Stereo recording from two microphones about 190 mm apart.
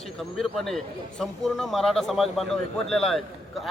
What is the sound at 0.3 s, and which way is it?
Speech, centre (ahead or behind).